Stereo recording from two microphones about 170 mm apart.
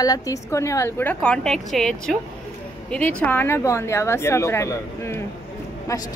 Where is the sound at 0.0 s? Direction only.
20° left (ahead or behind).